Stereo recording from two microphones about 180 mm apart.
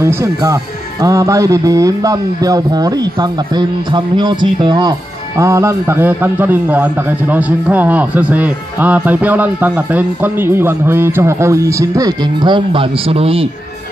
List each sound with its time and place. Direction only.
0.0 s a man's voice: 15° right (ahead or behind); by 13.5 s 30° right (ahead or behind)